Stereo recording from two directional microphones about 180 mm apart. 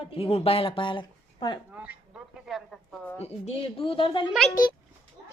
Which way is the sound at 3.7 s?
30° left (ahead or behind).